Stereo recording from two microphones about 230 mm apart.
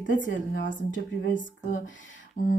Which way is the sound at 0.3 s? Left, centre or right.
Left.